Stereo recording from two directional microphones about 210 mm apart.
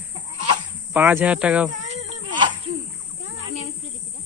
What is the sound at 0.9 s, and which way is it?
Speech, 10° right (ahead or behind).